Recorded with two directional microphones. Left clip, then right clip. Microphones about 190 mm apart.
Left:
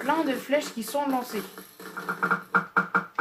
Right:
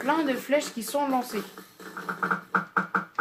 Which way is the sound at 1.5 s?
5° left (ahead or behind).